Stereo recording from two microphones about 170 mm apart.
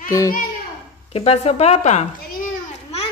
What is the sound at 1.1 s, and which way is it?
Speech, 35° left (ahead or behind).